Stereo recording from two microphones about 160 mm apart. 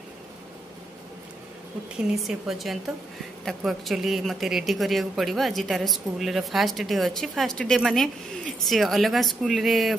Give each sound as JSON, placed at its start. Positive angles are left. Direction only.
{"t": 2.1, "sound": "speech", "side_deg": 0}